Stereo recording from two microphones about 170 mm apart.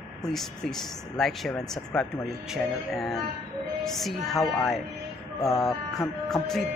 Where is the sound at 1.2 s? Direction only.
Centre (ahead or behind).